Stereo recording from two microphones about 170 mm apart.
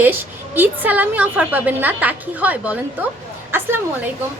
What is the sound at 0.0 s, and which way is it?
A woman's voice, 10° right (ahead or behind).